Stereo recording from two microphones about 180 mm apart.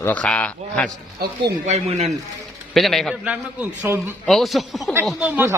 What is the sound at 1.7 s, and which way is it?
Speech, 35° right (ahead or behind).